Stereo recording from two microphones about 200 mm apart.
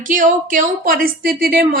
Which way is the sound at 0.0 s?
40° right (ahead or behind).